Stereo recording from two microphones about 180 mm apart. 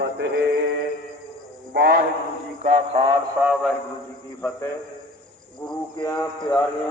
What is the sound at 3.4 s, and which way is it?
Speech, centre (ahead or behind).